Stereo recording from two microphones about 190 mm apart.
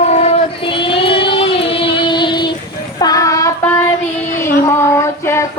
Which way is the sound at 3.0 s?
20° left (ahead or behind).